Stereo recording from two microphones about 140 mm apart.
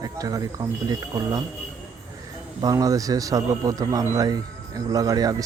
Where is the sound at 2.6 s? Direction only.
25° right (ahead or behind).